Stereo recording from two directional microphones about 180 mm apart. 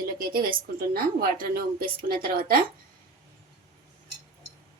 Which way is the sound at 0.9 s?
55° right (ahead or behind).